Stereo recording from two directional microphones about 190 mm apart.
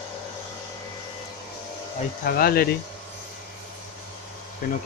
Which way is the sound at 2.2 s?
50° left (ahead or behind).